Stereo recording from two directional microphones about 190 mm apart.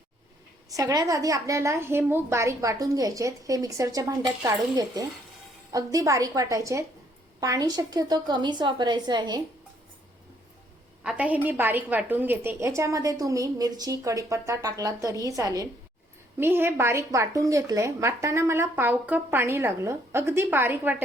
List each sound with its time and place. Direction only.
0.7 s a woman's voice: 20° right (ahead or behind)
11.0 s a woman's voice: 5° right (ahead or behind)